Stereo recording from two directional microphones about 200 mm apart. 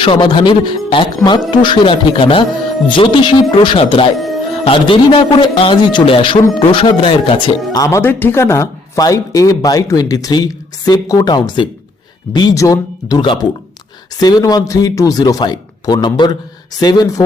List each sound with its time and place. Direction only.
0.0 s speech: 25° left (ahead or behind)
7.7 s speech: 15° left (ahead or behind)